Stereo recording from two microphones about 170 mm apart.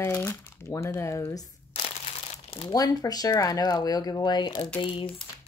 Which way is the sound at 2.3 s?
35° left (ahead or behind).